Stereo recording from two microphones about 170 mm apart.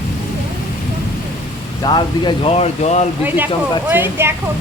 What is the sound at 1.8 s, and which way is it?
Speech, 25° left (ahead or behind).